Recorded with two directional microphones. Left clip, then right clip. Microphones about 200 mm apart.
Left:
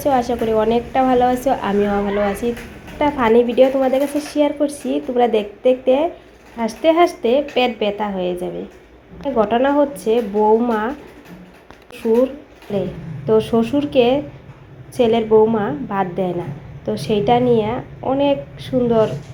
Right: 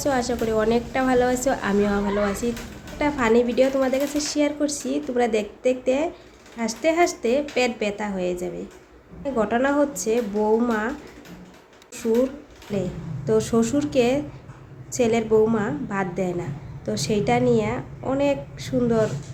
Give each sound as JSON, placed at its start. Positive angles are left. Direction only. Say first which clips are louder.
{"t": 0.0, "sound": "a woman's voice", "louder": "left 6 dB", "side_deg": -5}
{"t": 13.2, "sound": "a woman's voice", "louder": "left 5 dB", "side_deg": 0}